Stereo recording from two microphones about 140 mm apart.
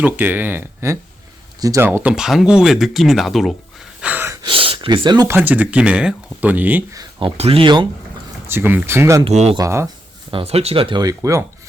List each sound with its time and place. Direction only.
0.0 s speech: 15° right (ahead or behind)
1.9 s speech: 10° right (ahead or behind)
4.0 s gasp: 15° right (ahead or behind)
4.4 s speech: 40° right (ahead or behind)
5.3 s speech: 10° right (ahead or behind)
6.9 s a sound: 30° right (ahead or behind)
7.3 s speech: 45° right (ahead or behind)
8.4 s speech: 15° right (ahead or behind)
9.2 s speech: 50° right (ahead or behind)
9.6 s speech: 20° right (ahead or behind)
10.3 s speech: 45° right (ahead or behind)
11.0 s speech: 25° right (ahead or behind)